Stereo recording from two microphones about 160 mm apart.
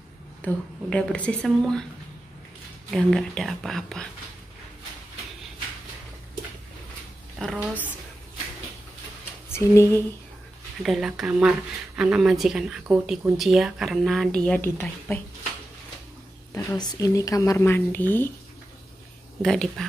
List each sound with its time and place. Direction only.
0.4 s speech: 5° left (ahead or behind)
2.9 s speech: centre (ahead or behind)
7.3 s a woman's voice: 5° right (ahead or behind)
9.5 s speech: 15° left (ahead or behind)
10.8 s speech: 5° right (ahead or behind)
16.5 s speech: 25° left (ahead or behind)
19.4 s speech: centre (ahead or behind)